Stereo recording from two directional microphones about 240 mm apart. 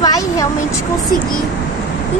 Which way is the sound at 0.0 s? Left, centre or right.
Centre.